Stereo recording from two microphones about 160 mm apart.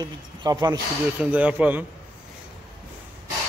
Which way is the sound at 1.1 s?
10° right (ahead or behind).